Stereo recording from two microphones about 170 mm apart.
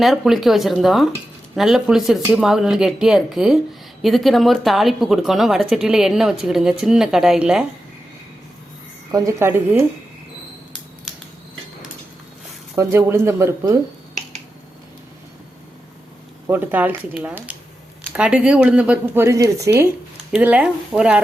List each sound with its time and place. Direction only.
0.0 s speech: centre (ahead or behind)
9.1 s speech: 15° right (ahead or behind)
12.7 s speech: 15° right (ahead or behind)
16.5 s speech: 10° right (ahead or behind)